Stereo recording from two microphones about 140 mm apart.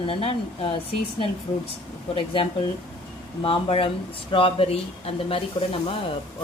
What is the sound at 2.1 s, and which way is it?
Speech, 40° left (ahead or behind).